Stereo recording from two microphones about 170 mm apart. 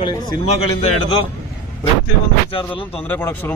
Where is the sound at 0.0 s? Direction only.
35° left (ahead or behind).